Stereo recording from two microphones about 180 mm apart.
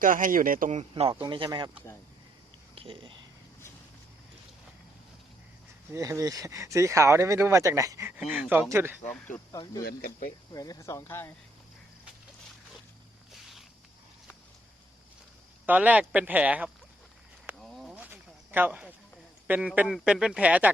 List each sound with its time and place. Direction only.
0.0 s speech: 50° right (ahead or behind); by 1.7 s 25° right (ahead or behind)
2.7 s speech: 30° right (ahead or behind)
5.9 s speech: 15° right (ahead or behind)
8.2 s speech: 5° right (ahead or behind)
9.5 s speech: 20° left (ahead or behind)
9.8 s speech: 50° left (ahead or behind)
10.5 s speech: 20° left (ahead or behind)
13.3 s a sound: centre (ahead or behind)
15.6 s speech: 10° right (ahead or behind)
17.6 s a sound: centre (ahead or behind)
17.9 s a sound: 10° right (ahead or behind)
19.5 s speech: 10° right (ahead or behind)